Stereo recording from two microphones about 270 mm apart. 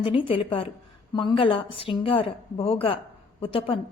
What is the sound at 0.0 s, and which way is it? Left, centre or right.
A woman's voice, centre.